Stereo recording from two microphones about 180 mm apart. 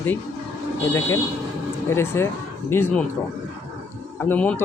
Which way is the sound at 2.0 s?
15° left (ahead or behind).